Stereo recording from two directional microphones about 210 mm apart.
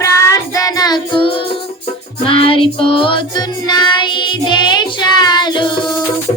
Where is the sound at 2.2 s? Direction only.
25° left (ahead or behind).